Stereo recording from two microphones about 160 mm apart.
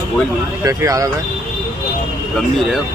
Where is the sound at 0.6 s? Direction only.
20° right (ahead or behind).